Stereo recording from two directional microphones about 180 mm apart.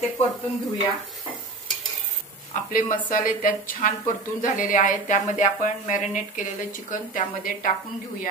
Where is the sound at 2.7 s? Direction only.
50° left (ahead or behind).